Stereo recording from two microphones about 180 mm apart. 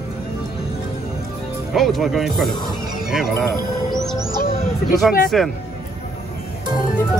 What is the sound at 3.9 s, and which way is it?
Music, centre (ahead or behind).